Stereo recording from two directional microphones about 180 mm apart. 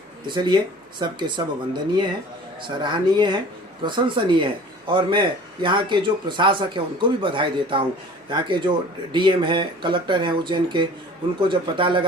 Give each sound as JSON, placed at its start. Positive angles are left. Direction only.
{"t": 0.3, "sound": "speech", "side_deg": -25}